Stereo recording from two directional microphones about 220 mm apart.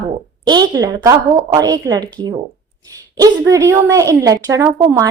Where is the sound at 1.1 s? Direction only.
20° right (ahead or behind).